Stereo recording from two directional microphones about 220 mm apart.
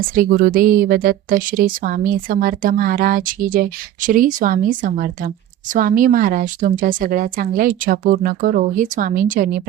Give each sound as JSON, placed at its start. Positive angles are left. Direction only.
{"t": 0.1, "sound": "a woman's voice", "side_deg": -40}